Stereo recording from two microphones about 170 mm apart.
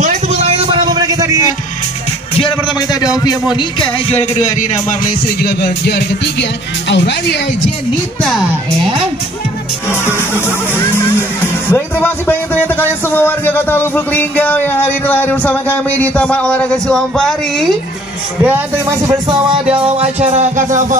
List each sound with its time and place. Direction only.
0.0 s a sound: 45° right (ahead or behind); by 1.4 s 20° right (ahead or behind)
2.9 s a man's voice: 20° left (ahead or behind)
4.1 s music: 45° left (ahead or behind); by 6.0 s 65° left (ahead or behind)
6.9 s speech: 90° left
8.2 s a man's voice: centre (ahead or behind)
9.8 s a man's voice: 15° left (ahead or behind)
18.4 s speech: 10° right (ahead or behind)
19.2 s music: 25° right (ahead or behind); by 20.8 s 45° right (ahead or behind)